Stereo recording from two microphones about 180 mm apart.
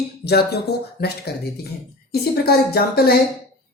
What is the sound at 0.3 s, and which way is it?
Speech, 65° left (ahead or behind).